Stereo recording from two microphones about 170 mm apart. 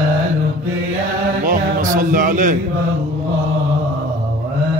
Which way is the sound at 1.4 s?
50° right (ahead or behind).